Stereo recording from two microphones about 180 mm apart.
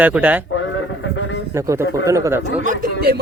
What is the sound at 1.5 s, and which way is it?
Speech, 15° right (ahead or behind).